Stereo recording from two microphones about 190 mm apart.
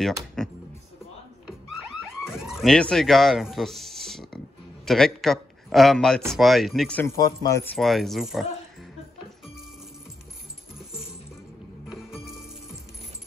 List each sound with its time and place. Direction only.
0.4 s speech: 5° left (ahead or behind)
2.2 s music: centre (ahead or behind)
4.8 s speech: centre (ahead or behind)
7.2 s speech: 20° left (ahead or behind)
7.7 s speech: centre (ahead or behind)
11.9 s music: centre (ahead or behind)